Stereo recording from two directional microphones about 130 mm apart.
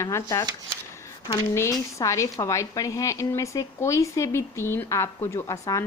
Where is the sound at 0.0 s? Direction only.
20° left (ahead or behind).